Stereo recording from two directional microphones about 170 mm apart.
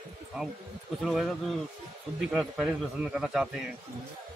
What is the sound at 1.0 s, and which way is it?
A man's voice, centre (ahead or behind).